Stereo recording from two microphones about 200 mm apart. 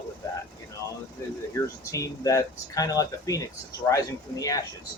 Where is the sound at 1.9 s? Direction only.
15° left (ahead or behind).